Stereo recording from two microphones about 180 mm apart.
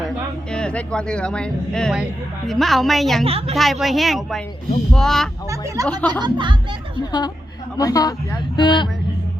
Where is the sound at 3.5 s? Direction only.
Centre (ahead or behind).